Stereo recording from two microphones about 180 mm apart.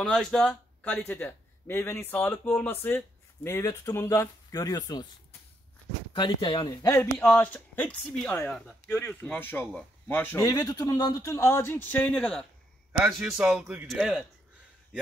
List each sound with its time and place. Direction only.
0.0 s a man's voice: 5° left (ahead or behind); by 5.0 s 20° left (ahead or behind)
6.1 s speech: 25° left (ahead or behind)
6.9 s a man's voice: 10° left (ahead or behind)